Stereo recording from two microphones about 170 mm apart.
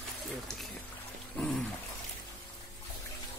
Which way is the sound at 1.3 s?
Centre (ahead or behind).